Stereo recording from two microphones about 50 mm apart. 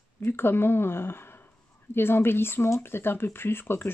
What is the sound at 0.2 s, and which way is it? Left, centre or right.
A woman's voice, left.